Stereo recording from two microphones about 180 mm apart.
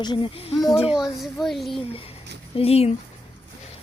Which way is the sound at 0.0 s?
25° left (ahead or behind).